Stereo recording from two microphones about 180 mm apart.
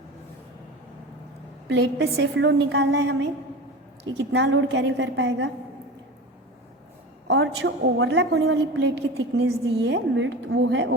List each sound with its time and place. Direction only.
1.6 s a woman's voice: 75° right (ahead or behind); by 5.5 s 90° right
7.3 s a woman's voice: 80° right